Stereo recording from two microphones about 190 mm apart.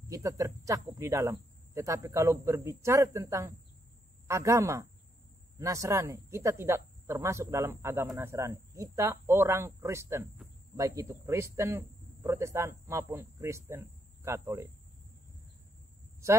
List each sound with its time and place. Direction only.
0.1 s speech: 15° right (ahead or behind)